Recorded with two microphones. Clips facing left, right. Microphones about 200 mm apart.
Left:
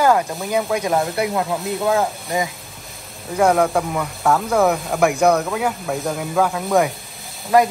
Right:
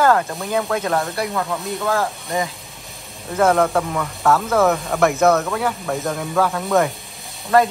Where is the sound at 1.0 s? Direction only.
25° left (ahead or behind).